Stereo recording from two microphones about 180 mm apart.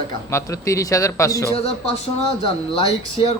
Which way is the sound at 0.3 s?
15° left (ahead or behind).